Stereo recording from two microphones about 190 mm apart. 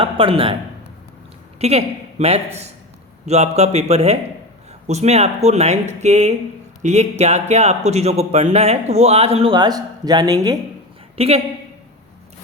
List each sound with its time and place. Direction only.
0.0 s speech: 30° right (ahead or behind)
1.5 s speech: 35° right (ahead or behind)
11.2 s speech: 35° right (ahead or behind)